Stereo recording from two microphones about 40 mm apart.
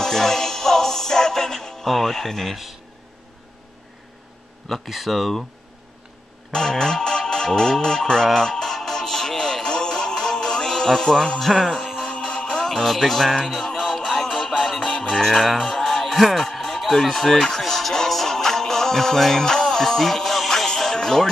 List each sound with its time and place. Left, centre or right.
0.0 s music: centre
4.6 s speech: centre
6.5 s music: centre
11.4 s speech: centre
12.1 s music: left
12.5 s music: centre
12.8 s speech: centre
13.5 s music: centre
14.9 s music: left
15.1 s music: centre
16.4 s a sound: centre
17.9 s music: centre